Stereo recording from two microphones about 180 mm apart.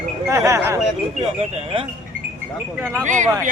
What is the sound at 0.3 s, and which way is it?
Speech, 15° right (ahead or behind).